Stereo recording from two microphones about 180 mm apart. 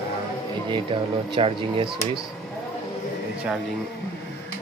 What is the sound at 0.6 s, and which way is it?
Speech, 25° right (ahead or behind).